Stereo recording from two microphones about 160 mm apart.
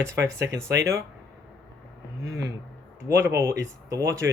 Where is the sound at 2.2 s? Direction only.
20° right (ahead or behind).